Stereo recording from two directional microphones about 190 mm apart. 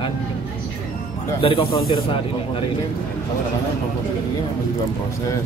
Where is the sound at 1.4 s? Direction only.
30° left (ahead or behind).